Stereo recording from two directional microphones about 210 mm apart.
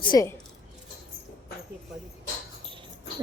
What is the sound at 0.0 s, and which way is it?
Speech, 20° left (ahead or behind).